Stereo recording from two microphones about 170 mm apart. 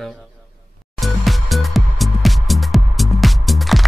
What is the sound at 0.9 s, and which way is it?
Music, centre (ahead or behind).